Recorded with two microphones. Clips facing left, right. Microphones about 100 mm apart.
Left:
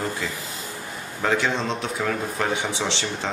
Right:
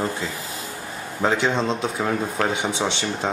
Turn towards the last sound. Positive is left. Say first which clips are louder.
# right 2 dB
turn(degrees=-20)  # may be behind; listen again after turning